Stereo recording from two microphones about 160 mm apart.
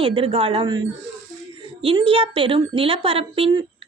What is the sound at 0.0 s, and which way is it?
Speech, 35° right (ahead or behind).